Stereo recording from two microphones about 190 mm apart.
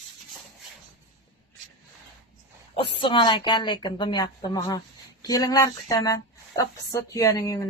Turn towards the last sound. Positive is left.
turn(degrees=15)  # may be behind; listen again after turning